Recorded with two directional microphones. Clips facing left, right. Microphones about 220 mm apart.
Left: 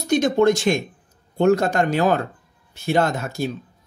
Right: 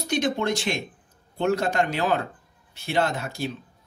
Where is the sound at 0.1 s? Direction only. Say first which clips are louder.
Left 8 dB; 45° left (ahead or behind).